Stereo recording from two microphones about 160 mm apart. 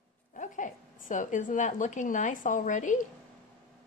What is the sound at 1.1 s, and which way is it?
A woman's voice, 55° left (ahead or behind).